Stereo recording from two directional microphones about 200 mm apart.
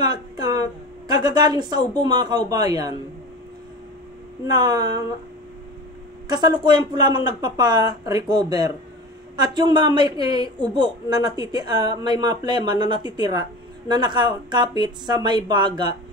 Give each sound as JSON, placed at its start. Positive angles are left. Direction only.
{"t": 0.0, "sound": "a woman's voice", "side_deg": -20}
{"t": 4.5, "sound": "a woman's voice", "side_deg": -20}
{"t": 6.2, "sound": "a woman's voice", "side_deg": -20}